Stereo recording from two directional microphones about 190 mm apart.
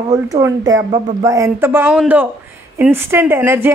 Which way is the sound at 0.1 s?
20° right (ahead or behind).